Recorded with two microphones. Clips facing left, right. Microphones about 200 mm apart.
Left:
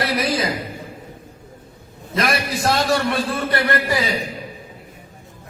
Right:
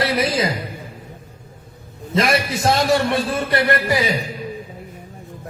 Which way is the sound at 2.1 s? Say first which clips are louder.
Right 3 dB; 25° right (ahead or behind).